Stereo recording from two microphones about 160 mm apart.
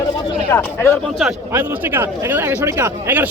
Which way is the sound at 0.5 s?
15° left (ahead or behind).